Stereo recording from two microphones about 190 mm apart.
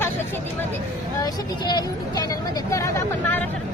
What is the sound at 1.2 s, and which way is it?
Speech, 20° left (ahead or behind).